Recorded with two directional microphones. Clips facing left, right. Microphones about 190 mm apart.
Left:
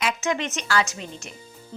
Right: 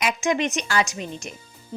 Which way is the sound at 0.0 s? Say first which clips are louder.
Right 3 dB; 15° right (ahead or behind).